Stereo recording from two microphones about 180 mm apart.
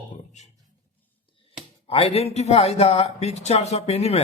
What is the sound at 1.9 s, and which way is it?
Speech, 35° left (ahead or behind).